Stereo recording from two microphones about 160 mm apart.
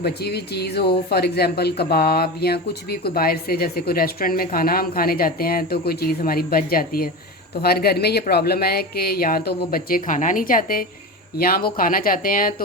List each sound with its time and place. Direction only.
0.0 s speech: 85° left; by 12.6 s 60° left (ahead or behind)